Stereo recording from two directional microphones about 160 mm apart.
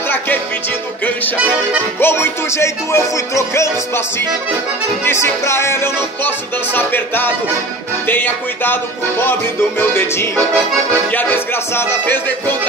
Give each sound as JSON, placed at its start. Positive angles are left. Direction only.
{"t": 2.0, "sound": "music", "side_deg": 15}
{"t": 5.0, "sound": "music", "side_deg": 15}